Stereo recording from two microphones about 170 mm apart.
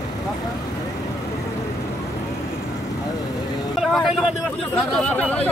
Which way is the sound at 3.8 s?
Centre (ahead or behind).